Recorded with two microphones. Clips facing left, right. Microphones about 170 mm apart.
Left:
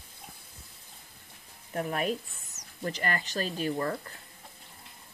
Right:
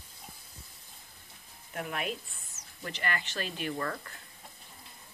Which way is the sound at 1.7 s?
35° left (ahead or behind).